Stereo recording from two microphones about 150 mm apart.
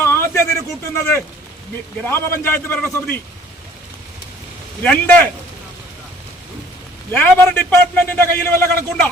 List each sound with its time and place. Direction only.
0.0 s a sound: 15° left (ahead or behind)
0.9 s a man's voice: 15° left (ahead or behind)
4.8 s a man's voice: 10° left (ahead or behind)
7.1 s a man's voice: 10° left (ahead or behind)